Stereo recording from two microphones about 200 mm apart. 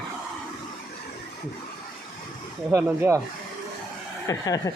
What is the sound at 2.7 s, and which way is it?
Speech, 15° right (ahead or behind).